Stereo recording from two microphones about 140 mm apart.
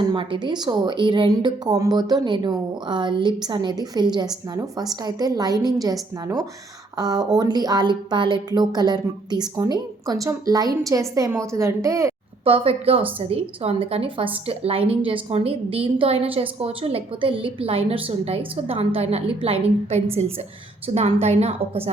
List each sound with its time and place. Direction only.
0.1 s a woman's voice: 35° right (ahead or behind)
12.5 s a woman's voice: 40° right (ahead or behind)